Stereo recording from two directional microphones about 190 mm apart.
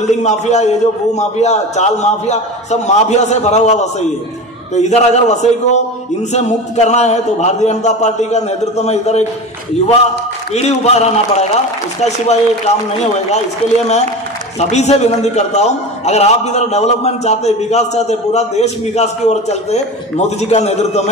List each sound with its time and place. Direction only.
0.0 s a man's voice: 35° left (ahead or behind)
10.5 s a man's voice: 35° left (ahead or behind)
14.6 s a man's voice: 35° left (ahead or behind)